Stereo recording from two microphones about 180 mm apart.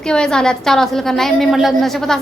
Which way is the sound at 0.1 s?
5° left (ahead or behind).